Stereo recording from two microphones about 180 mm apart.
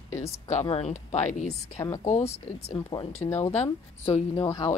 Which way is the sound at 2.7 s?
25° left (ahead or behind).